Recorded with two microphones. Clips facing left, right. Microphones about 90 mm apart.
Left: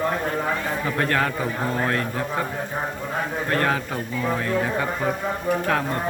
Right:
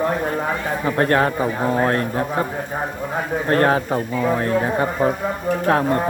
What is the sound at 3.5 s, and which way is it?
A man's voice, 35° right (ahead or behind).